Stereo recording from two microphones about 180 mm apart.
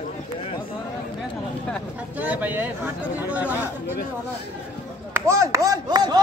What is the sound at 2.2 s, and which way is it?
Speech, 10° right (ahead or behind).